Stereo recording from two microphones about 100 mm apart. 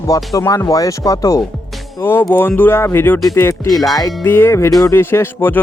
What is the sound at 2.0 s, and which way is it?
Speech, 25° left (ahead or behind).